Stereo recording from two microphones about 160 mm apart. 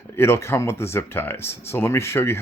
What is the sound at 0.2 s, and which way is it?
Speech, 15° left (ahead or behind).